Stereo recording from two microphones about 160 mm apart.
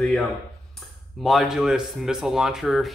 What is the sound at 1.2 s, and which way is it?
Speech, centre (ahead or behind).